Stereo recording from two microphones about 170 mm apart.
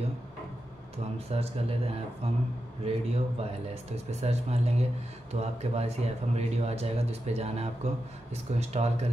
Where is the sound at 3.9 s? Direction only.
40° right (ahead or behind).